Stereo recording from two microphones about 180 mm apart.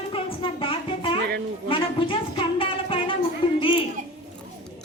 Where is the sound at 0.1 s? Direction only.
30° left (ahead or behind).